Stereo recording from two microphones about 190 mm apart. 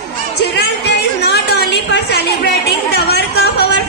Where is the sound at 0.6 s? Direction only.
60° left (ahead or behind).